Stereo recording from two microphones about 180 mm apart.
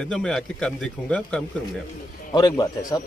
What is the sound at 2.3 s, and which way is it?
Speech, 20° left (ahead or behind).